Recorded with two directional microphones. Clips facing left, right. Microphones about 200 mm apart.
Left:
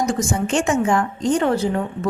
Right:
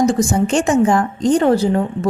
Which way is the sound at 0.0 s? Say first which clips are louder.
Right 6 dB; 35° right (ahead or behind).